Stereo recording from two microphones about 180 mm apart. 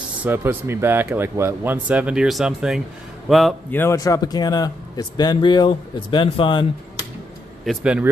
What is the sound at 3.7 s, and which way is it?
A man's voice, 15° left (ahead or behind).